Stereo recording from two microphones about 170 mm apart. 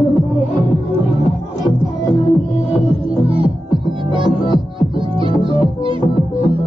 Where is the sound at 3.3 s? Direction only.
30° right (ahead or behind).